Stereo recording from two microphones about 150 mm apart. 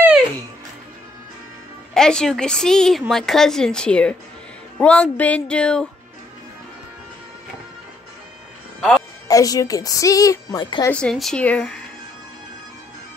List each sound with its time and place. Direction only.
2.0 s a woman's voice: 5° left (ahead or behind)
9.3 s a woman's voice: 25° left (ahead or behind)
10.9 s speech: 5° left (ahead or behind)